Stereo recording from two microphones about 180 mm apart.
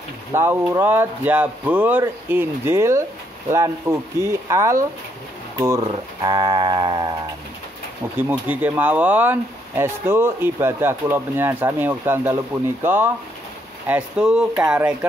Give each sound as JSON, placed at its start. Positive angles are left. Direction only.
{"t": 0.3, "sound": "speech", "side_deg": -15}
{"t": 5.6, "sound": "a sound", "side_deg": -20}
{"t": 8.2, "sound": "speech", "side_deg": -10}